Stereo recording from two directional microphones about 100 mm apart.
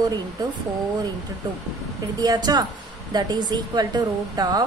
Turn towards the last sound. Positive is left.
turn(degrees=-40)  # may be behind; listen again after turning